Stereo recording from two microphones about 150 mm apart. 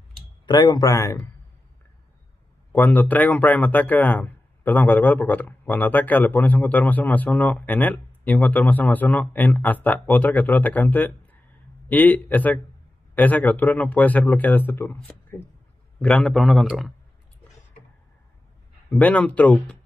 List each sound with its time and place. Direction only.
0.5 s speech: 25° left (ahead or behind)
2.7 s a man's voice: 10° left (ahead or behind)
18.9 s speech: 10° left (ahead or behind)